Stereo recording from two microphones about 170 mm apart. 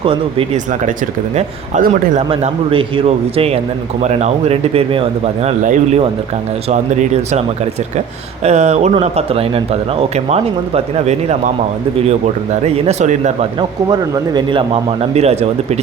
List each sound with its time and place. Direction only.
0.0 s speech: 35° right (ahead or behind)
0.7 s a man's voice: 45° right (ahead or behind)
2.3 s speech: 30° right (ahead or behind)
12.6 s speech: 35° right (ahead or behind)
13.6 s speech: 25° right (ahead or behind)